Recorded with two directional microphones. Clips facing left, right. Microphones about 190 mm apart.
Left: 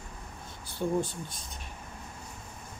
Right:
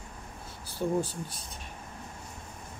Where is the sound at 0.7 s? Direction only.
35° right (ahead or behind).